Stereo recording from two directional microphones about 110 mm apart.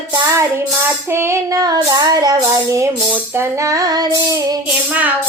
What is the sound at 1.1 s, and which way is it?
Child singing, 25° right (ahead or behind).